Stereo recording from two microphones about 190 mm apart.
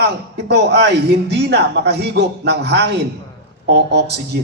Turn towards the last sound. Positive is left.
turn(degrees=-60)  # may be behind; listen again after turning